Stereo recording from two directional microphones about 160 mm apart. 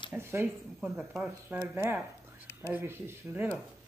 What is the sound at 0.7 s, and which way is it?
Speech, centre (ahead or behind).